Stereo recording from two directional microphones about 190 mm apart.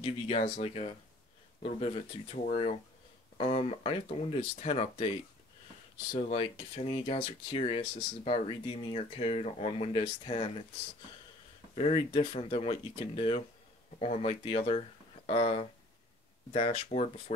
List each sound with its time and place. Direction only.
0.0 s speech: 35° left (ahead or behind)
6.1 s speech: 30° left (ahead or behind)
11.7 s speech: 30° left (ahead or behind)